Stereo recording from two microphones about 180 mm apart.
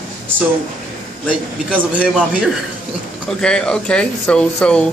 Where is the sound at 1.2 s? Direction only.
5° right (ahead or behind).